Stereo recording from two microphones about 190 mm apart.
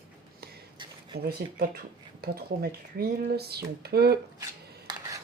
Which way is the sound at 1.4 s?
50° right (ahead or behind).